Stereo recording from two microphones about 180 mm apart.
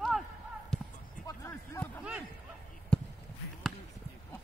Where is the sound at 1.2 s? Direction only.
15° left (ahead or behind).